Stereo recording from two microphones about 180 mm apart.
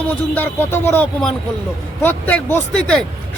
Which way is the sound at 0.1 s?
10° left (ahead or behind).